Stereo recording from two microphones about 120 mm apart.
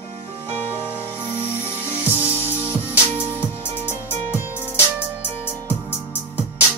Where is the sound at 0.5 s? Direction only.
15° right (ahead or behind).